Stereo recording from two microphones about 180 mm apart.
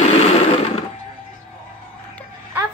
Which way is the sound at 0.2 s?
35° left (ahead or behind).